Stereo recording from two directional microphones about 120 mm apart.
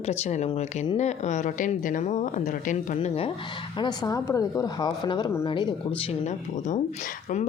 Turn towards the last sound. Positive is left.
turn(degrees=75)  # may be behind; listen again after turning